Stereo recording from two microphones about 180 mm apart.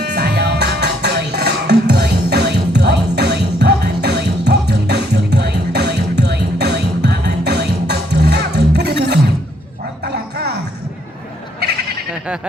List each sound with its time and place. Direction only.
0.0 s music: 60° right (ahead or behind)
10.0 s dog: 65° right (ahead or behind)